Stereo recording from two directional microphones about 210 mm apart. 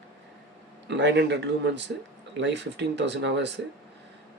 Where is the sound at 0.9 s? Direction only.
55° right (ahead or behind).